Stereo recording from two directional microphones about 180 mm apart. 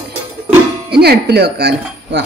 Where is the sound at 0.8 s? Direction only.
65° right (ahead or behind).